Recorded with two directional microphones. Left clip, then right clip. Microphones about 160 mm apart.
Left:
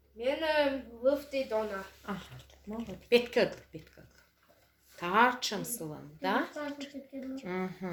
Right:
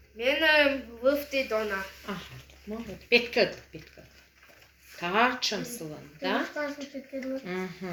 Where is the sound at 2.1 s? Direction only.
90° left.